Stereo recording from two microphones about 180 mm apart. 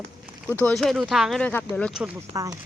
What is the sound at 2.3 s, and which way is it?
Speech, 20° right (ahead or behind).